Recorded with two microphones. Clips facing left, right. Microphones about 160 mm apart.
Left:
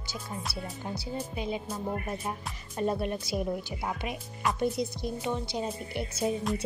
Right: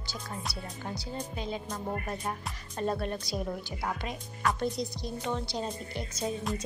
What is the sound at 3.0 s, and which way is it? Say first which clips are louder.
Speech: left 3 dB; 5° left (ahead or behind).